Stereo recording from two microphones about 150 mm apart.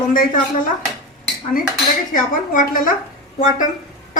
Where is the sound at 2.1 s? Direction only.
65° left (ahead or behind).